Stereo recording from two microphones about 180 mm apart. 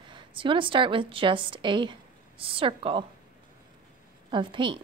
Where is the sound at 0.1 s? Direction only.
25° right (ahead or behind).